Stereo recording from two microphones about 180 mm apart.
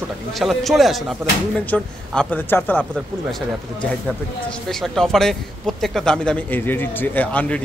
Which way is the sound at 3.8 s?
5° left (ahead or behind).